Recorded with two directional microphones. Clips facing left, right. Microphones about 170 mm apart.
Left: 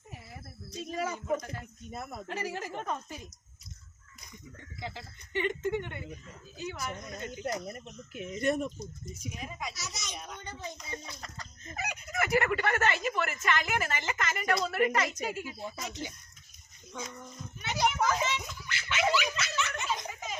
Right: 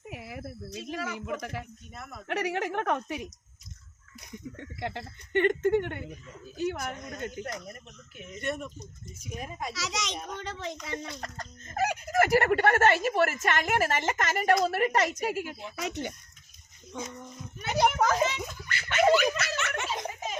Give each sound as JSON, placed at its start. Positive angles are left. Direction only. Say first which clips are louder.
{"t": 0.1, "sound": "speech", "louder": "right 8 dB", "side_deg": -75}
{"t": 1.9, "sound": "speech", "louder": "left 4 dB", "side_deg": 35}
{"t": 2.2, "sound": "a woman's voice", "louder": "right 9 dB", "side_deg": -70}
{"t": 7.5, "sound": "speech", "louder": "left 4 dB", "side_deg": 35}
{"t": 9.1, "sound": "speech", "louder": "right 5 dB", "side_deg": -45}
{"t": 9.7, "sound": "a child's voice", "louder": "right 8 dB", "side_deg": -90}
{"t": 15.4, "sound": "speech", "louder": "right 4 dB", "side_deg": -80}
{"t": 17.6, "sound": "a sound", "louder": "right 4 dB", "side_deg": -50}